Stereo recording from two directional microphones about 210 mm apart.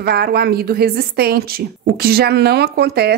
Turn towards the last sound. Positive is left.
turn(degrees=-50)  # may be behind; listen again after turning